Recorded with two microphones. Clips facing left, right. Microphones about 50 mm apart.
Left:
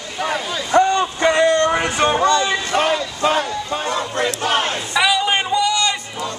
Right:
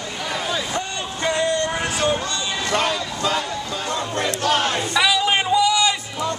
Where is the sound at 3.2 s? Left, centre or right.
Left.